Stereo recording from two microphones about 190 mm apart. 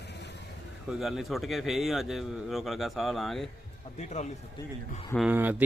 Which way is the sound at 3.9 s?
35° left (ahead or behind).